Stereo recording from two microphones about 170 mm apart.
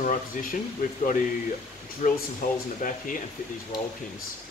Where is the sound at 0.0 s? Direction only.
50° left (ahead or behind).